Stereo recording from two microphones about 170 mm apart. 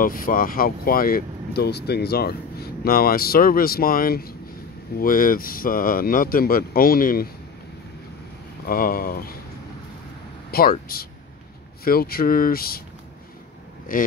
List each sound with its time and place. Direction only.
0.0 s speech: 55° left (ahead or behind)
8.6 s speech: 55° left (ahead or behind)
10.5 s speech: 60° left (ahead or behind)
13.9 s speech: 55° left (ahead or behind)